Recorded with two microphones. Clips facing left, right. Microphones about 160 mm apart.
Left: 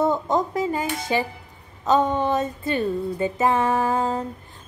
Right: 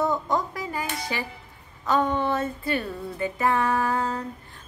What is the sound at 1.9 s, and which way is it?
Music, 20° left (ahead or behind).